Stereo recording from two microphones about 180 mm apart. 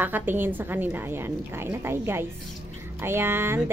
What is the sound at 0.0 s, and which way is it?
Speech, 10° right (ahead or behind).